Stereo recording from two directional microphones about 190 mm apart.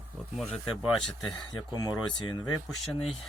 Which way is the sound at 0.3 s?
5° left (ahead or behind).